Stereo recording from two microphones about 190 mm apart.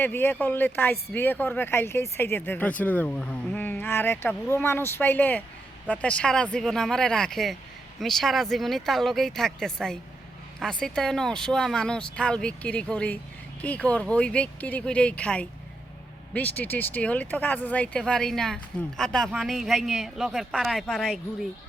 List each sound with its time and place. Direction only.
0.0 s speech: 10° left (ahead or behind)
16.6 s speech: 10° left (ahead or behind)